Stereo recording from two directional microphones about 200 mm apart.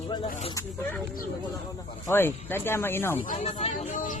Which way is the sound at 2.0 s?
10° left (ahead or behind).